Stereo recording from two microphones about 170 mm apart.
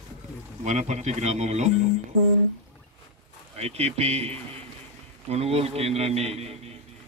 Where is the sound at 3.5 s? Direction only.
40° right (ahead or behind).